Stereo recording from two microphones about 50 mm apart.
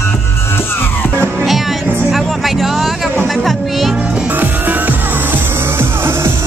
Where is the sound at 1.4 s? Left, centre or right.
Centre.